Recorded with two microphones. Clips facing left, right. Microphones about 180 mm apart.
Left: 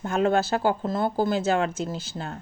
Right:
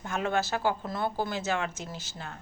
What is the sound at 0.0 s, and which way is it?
Speech, 40° left (ahead or behind).